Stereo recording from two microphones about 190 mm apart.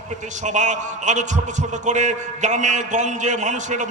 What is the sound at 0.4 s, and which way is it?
A man's voice, 40° right (ahead or behind).